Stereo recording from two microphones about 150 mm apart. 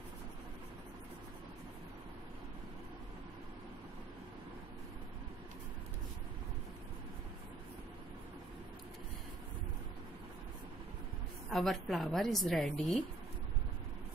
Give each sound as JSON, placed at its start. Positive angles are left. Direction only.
{"t": 11.5, "sound": "a woman's voice", "side_deg": 0}